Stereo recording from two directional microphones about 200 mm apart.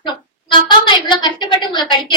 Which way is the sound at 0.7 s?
25° left (ahead or behind).